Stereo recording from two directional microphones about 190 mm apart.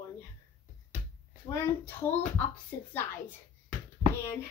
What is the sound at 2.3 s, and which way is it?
Speech, 10° left (ahead or behind).